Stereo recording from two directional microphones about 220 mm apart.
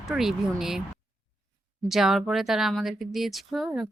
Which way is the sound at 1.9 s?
Centre (ahead or behind).